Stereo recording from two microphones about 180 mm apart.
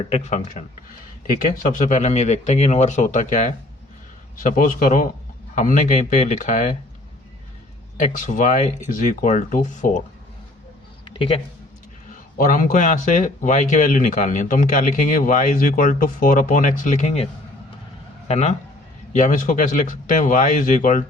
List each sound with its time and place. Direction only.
0.1 s speech: 40° left (ahead or behind)
1.5 s speech: 45° left (ahead or behind)
7.9 s speech: 45° left (ahead or behind)
11.0 s a sound: 30° left (ahead or behind)
12.4 s speech: 45° left (ahead or behind)
18.3 s a man's voice: 40° left (ahead or behind)